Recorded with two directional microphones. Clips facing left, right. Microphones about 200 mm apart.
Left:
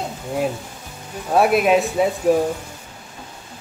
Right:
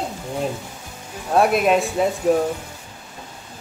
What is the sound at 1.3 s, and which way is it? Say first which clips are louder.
Speech: left 1 dB; 5° left (ahead or behind).